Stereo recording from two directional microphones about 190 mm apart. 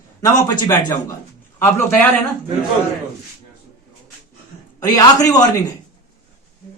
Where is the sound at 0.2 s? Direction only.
20° left (ahead or behind).